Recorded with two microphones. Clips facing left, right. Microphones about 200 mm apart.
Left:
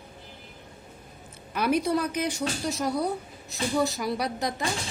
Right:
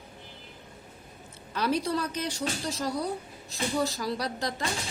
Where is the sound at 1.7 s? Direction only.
55° left (ahead or behind).